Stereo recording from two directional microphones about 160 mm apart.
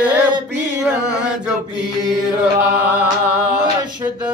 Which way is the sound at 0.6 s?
5° right (ahead or behind).